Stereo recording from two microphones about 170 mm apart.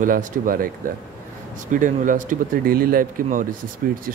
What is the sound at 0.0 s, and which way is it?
Speech, 55° right (ahead or behind).